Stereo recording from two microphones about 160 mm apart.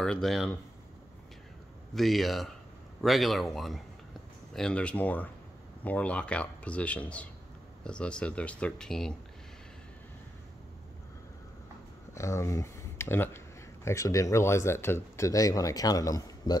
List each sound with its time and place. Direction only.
0.0 s speech: 5° left (ahead or behind)
2.0 s speech: centre (ahead or behind)
12.1 s speech: 20° left (ahead or behind)